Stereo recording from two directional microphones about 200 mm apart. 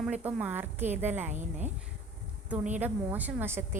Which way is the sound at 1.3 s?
35° right (ahead or behind).